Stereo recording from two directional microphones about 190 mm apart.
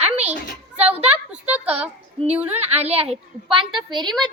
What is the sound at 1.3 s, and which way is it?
Speech, 5° right (ahead or behind).